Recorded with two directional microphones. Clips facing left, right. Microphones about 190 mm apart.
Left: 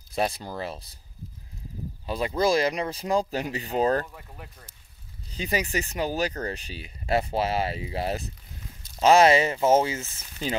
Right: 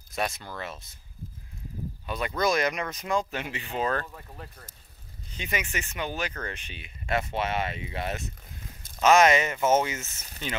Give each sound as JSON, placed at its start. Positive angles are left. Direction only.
{"t": 0.1, "sound": "speech", "side_deg": 30}
{"t": 2.0, "sound": "speech", "side_deg": 30}
{"t": 5.3, "sound": "speech", "side_deg": 35}